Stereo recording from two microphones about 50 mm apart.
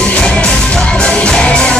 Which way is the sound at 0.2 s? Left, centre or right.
Centre.